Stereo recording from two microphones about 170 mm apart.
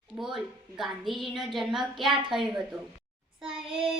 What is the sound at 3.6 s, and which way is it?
Child singing, 30° right (ahead or behind).